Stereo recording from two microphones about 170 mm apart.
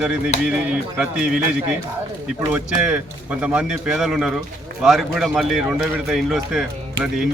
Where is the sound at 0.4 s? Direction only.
5° right (ahead or behind).